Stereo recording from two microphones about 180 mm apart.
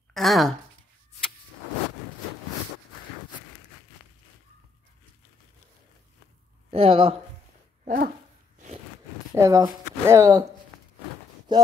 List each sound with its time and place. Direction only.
0.1 s speech: centre (ahead or behind)
6.7 s speech: 30° right (ahead or behind)
7.8 s speech: 45° right (ahead or behind)
9.3 s speech: 15° right (ahead or behind)
11.5 s a sound: 25° right (ahead or behind)